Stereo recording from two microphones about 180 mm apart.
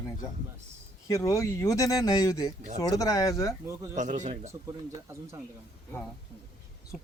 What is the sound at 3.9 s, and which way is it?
Speech, 40° right (ahead or behind).